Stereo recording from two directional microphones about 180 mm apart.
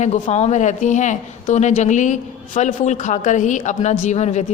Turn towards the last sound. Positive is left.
turn(degrees=40)  # may be behind; listen again after turning